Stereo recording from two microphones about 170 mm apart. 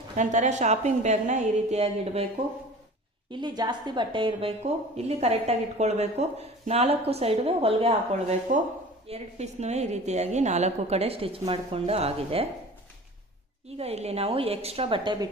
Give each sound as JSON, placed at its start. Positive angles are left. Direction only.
{"t": 0.2, "sound": "a woman's voice", "side_deg": -45}
{"t": 3.2, "sound": "a woman's voice", "side_deg": -25}
{"t": 13.7, "sound": "a woman's voice", "side_deg": -35}